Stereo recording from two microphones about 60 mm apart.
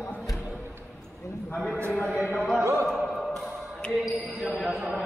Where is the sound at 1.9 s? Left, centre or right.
Centre.